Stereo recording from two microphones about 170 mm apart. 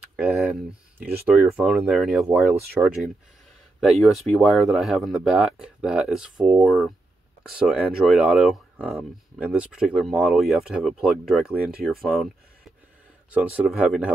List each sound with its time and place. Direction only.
0.1 s speech: 5° right (ahead or behind)
13.3 s speech: 5° right (ahead or behind)